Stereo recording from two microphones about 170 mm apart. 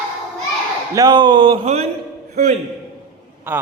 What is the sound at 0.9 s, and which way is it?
Speech, 25° right (ahead or behind).